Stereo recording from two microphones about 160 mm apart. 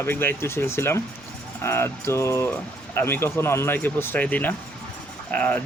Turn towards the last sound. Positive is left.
turn(degrees=10)  # may be behind; listen again after turning